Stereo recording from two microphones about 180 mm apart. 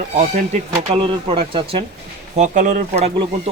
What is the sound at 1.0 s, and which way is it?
Speech, 30° right (ahead or behind).